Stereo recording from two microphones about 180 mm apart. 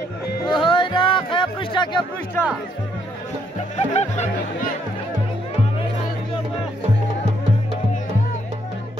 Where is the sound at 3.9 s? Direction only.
40° left (ahead or behind).